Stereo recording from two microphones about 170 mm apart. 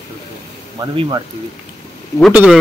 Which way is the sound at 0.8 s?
30° right (ahead or behind).